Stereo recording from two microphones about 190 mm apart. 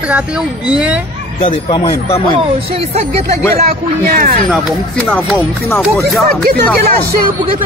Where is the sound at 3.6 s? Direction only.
50° right (ahead or behind).